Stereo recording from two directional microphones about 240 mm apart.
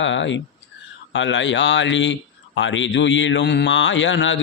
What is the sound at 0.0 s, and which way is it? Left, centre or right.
Speech, left.